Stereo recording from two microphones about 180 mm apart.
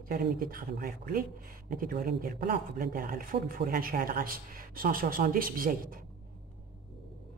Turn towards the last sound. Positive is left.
turn(degrees=-50)  # may be behind; listen again after turning